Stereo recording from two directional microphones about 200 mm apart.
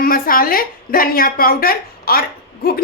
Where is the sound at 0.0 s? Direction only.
45° left (ahead or behind).